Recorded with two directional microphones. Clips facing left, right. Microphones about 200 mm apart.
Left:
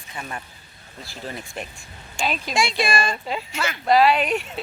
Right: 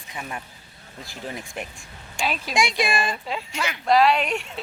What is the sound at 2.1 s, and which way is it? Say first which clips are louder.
Speech: left 1 dB; 5° right (ahead or behind).